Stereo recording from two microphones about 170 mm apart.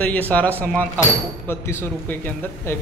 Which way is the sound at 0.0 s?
10° left (ahead or behind).